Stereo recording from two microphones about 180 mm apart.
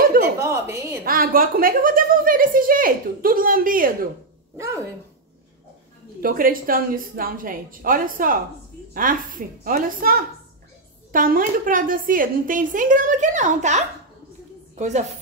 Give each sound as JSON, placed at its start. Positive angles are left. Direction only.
{"t": 0.4, "sound": "a woman's voice", "side_deg": -15}
{"t": 1.0, "sound": "a woman's voice", "side_deg": -50}
{"t": 6.2, "sound": "a woman's voice", "side_deg": -50}